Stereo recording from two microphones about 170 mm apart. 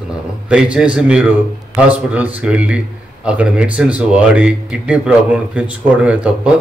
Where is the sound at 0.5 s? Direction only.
5° right (ahead or behind).